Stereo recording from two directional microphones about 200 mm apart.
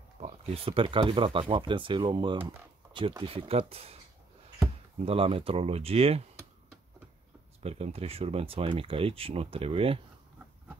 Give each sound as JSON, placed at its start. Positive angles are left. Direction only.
{"t": 0.2, "sound": "speech", "side_deg": -30}
{"t": 7.6, "sound": "speech", "side_deg": -30}